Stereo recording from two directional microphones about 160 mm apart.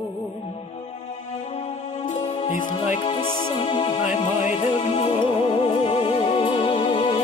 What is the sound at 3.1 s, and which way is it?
Music, 30° left (ahead or behind).